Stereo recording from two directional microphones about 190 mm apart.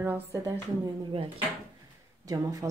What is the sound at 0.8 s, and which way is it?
Speech, 30° right (ahead or behind).